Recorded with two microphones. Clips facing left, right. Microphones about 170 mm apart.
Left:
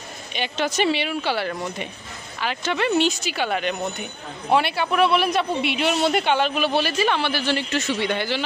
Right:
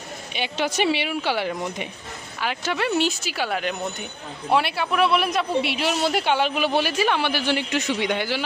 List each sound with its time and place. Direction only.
0.3 s a man's voice: 10° right (ahead or behind)